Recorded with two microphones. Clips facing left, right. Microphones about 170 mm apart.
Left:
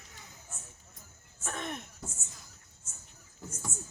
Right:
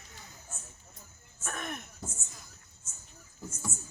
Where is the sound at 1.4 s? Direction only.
25° left (ahead or behind).